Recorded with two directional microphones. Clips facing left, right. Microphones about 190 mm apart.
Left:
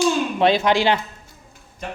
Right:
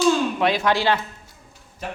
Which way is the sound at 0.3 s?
25° left (ahead or behind).